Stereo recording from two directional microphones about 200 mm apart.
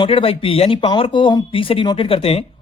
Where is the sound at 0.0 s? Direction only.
25° left (ahead or behind).